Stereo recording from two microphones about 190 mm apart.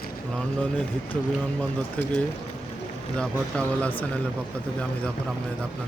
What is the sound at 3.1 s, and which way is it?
Speech, 5° left (ahead or behind).